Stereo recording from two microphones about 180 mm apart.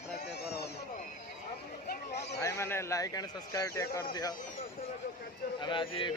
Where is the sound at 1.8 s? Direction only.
65° left (ahead or behind).